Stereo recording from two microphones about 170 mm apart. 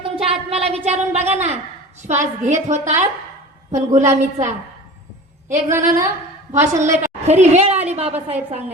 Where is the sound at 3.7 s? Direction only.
45° right (ahead or behind).